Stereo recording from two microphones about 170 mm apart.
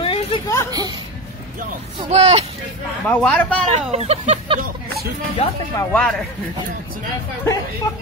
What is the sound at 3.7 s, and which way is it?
Speech, 40° right (ahead or behind).